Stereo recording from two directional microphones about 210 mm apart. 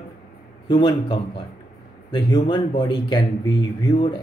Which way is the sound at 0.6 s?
20° left (ahead or behind).